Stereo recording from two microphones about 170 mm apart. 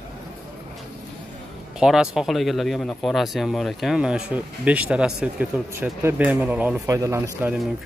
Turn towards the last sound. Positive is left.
turn(degrees=-15)  # may be behind; listen again after turning